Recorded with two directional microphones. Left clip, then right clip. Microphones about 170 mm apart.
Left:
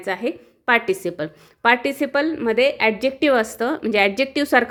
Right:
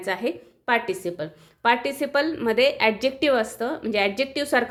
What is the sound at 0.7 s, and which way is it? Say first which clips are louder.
Speech: left 5 dB; 35° left (ahead or behind).